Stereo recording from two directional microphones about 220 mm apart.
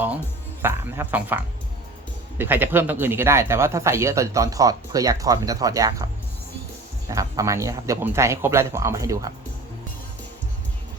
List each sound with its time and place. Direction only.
0.6 s speech: 10° right (ahead or behind)
2.4 s speech: 10° right (ahead or behind)
7.1 s speech: 15° right (ahead or behind)